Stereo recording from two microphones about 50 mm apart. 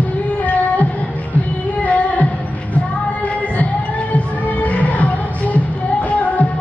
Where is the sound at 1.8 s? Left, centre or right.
Left.